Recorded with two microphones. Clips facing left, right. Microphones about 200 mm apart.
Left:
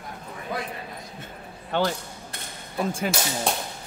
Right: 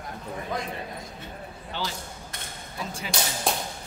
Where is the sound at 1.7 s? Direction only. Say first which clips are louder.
Left 9 dB; 55° left (ahead or behind).